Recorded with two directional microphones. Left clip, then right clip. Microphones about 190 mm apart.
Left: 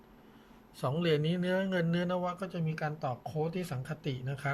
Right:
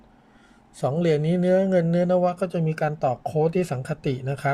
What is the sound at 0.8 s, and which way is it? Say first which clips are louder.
Speech: right 8 dB; 25° right (ahead or behind).